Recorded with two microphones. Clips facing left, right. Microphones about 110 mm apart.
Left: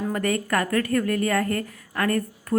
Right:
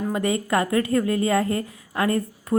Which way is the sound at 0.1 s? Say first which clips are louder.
Right 2 dB; 20° right (ahead or behind).